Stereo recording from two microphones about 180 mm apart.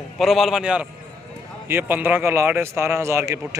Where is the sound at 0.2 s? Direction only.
Centre (ahead or behind).